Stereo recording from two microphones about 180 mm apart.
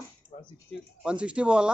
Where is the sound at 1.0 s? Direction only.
5° right (ahead or behind).